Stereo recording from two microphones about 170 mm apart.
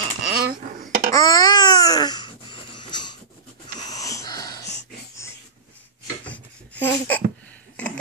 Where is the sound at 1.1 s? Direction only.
20° left (ahead or behind).